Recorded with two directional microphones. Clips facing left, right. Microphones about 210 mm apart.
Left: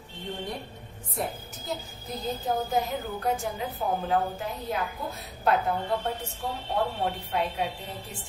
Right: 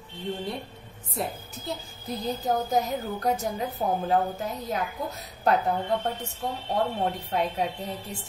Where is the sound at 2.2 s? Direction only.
40° right (ahead or behind).